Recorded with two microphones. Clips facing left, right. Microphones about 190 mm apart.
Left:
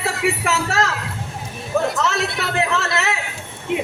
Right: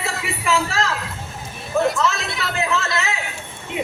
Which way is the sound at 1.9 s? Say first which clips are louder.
Left 1 dB; 70° left (ahead or behind).